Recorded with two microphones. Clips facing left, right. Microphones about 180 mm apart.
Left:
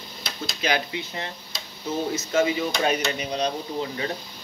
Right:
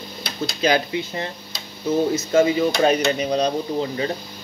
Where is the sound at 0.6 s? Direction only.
35° right (ahead or behind).